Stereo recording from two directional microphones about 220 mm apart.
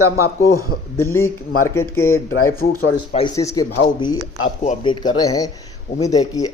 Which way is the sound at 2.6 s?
40° left (ahead or behind).